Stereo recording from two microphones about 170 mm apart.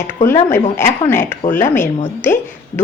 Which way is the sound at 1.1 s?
15° left (ahead or behind).